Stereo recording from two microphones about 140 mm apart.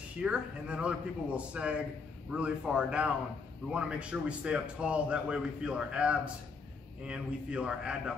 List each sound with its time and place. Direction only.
0.2 s a man's voice: 5° right (ahead or behind)